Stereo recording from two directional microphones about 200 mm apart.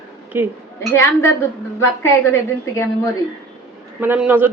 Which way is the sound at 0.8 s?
15° left (ahead or behind).